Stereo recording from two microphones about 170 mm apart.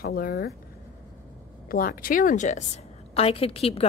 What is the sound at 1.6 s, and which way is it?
Speech, 55° left (ahead or behind).